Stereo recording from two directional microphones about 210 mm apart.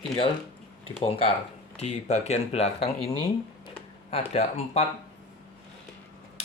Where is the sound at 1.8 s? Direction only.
30° left (ahead or behind).